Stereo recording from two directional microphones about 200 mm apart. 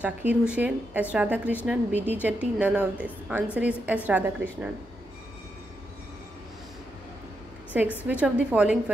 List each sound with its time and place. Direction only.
0.0 s a woman's voice: 5° right (ahead or behind)
8.1 s a woman's voice: 5° right (ahead or behind)